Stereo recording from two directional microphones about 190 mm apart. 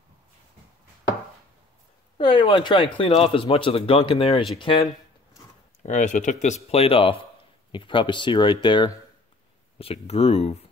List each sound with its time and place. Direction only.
2.1 s speech: 25° left (ahead or behind)
5.8 s speech: 40° left (ahead or behind)